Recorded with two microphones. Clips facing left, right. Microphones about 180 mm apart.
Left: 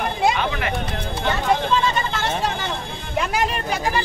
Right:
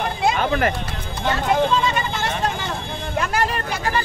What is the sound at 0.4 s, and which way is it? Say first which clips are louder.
Speech: right 4 dB; 45° right (ahead or behind).